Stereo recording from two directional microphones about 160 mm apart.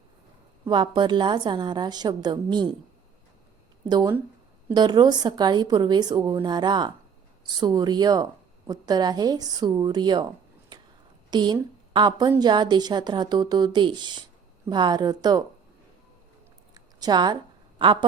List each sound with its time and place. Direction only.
0.7 s a woman's voice: 30° right (ahead or behind)
3.8 s a woman's voice: 25° right (ahead or behind)
16.7 s a sound: 25° right (ahead or behind)
17.8 s speech: 35° right (ahead or behind)